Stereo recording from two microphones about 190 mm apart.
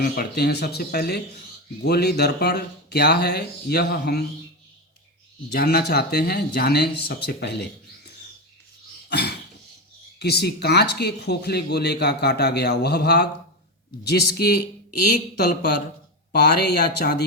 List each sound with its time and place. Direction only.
0.0 s speech: 55° left (ahead or behind)
5.5 s speech: 55° left (ahead or behind)
9.0 s a sound: 60° left (ahead or behind)
10.2 s speech: 60° left (ahead or behind)